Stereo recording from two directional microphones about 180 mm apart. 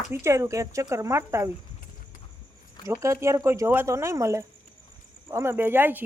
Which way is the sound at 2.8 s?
15° right (ahead or behind).